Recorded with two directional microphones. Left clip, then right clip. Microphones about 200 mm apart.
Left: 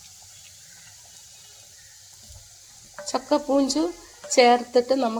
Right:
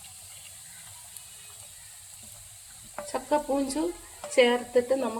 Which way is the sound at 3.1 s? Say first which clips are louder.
Left 5 dB; 35° left (ahead or behind).